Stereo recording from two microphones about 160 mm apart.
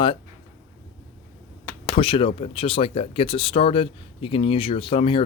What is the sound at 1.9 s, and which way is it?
Speech, 35° left (ahead or behind).